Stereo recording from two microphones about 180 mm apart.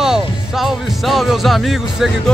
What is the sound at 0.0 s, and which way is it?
Speech, centre (ahead or behind).